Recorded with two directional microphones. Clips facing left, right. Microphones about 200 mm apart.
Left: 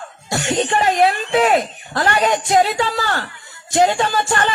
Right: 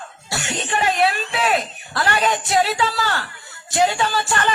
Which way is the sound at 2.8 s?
45° left (ahead or behind).